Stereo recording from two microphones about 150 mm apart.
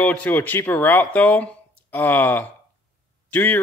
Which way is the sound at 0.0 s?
10° left (ahead or behind).